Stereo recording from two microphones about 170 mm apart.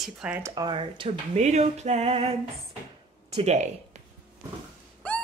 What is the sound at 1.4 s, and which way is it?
Music, 40° right (ahead or behind).